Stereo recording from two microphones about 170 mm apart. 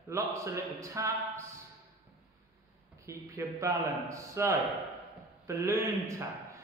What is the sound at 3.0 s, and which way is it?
A man's voice, 20° right (ahead or behind).